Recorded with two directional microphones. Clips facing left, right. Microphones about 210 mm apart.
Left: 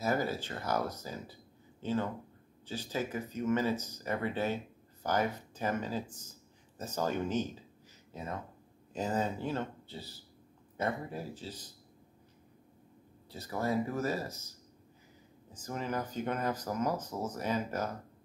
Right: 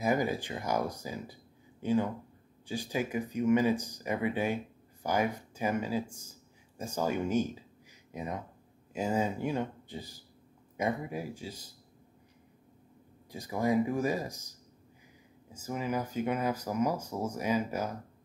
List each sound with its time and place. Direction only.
0.0 s speech: 15° right (ahead or behind)
13.3 s speech: 15° right (ahead or behind)
15.5 s speech: 10° right (ahead or behind)